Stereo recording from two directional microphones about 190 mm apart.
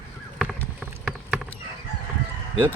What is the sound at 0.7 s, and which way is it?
Clip-clop, centre (ahead or behind).